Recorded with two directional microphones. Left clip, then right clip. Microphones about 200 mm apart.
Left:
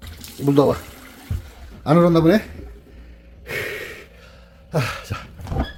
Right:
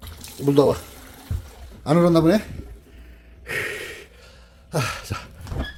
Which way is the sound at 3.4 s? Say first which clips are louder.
Even; centre (ahead or behind).